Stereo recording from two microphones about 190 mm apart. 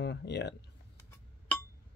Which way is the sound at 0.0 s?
65° left (ahead or behind).